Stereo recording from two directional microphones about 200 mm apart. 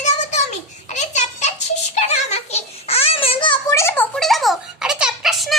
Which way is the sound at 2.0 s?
35° left (ahead or behind).